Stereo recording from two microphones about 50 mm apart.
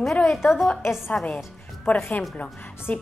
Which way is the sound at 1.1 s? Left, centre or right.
Left.